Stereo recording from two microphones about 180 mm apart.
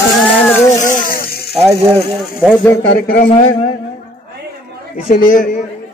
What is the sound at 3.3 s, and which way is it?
Speech, 30° left (ahead or behind).